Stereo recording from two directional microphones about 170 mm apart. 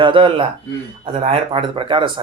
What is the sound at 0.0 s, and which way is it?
Speech, 30° right (ahead or behind).